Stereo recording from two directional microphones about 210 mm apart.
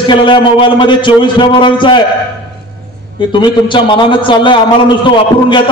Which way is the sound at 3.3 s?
20° left (ahead or behind).